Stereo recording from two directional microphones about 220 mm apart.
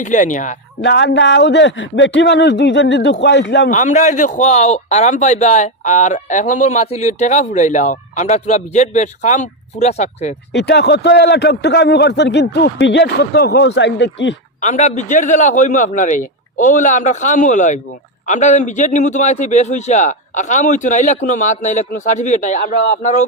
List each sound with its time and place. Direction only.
0.0 s a man's voice: 35° left (ahead or behind)
0.8 s a man's voice: 55° left (ahead or behind)
3.7 s a man's voice: 35° left (ahead or behind)
10.5 s a man's voice: 50° left (ahead or behind)
14.6 s a man's voice: 30° left (ahead or behind)